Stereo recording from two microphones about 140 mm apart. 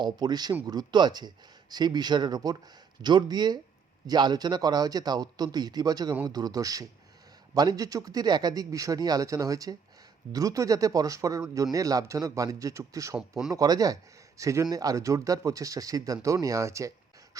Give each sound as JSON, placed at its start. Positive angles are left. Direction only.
{"t": 0.0, "sound": "speech", "side_deg": -30}